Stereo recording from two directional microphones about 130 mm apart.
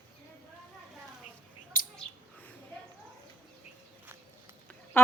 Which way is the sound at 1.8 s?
90° left.